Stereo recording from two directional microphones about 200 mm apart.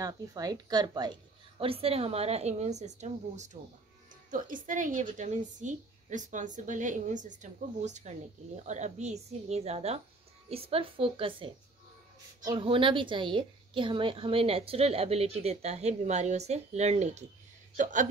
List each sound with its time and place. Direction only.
0.0 s a woman's voice: 20° right (ahead or behind); by 17.3 s 35° right (ahead or behind)